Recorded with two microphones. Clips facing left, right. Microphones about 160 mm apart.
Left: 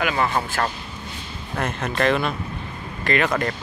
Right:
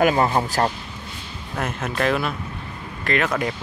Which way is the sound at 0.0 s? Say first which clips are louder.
Right 4 dB; 35° right (ahead or behind).